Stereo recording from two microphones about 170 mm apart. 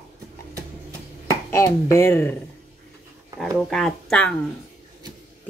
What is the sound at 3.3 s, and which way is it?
Speech, centre (ahead or behind).